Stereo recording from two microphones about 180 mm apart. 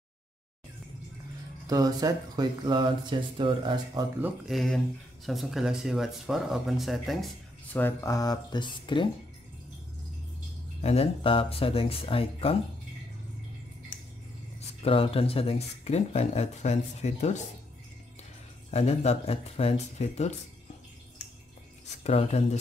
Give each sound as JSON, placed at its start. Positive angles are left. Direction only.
{"t": 1.7, "sound": "speech", "side_deg": -20}
{"t": 4.2, "sound": "speech", "side_deg": 0}
{"t": 7.8, "sound": "speech", "side_deg": 15}
{"t": 10.8, "sound": "speech", "side_deg": 35}
{"t": 14.8, "sound": "speech", "side_deg": 30}
{"t": 18.7, "sound": "speech", "side_deg": 35}
{"t": 22.0, "sound": "speech", "side_deg": 40}